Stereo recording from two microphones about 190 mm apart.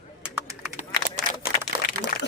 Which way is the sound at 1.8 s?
45° left (ahead or behind).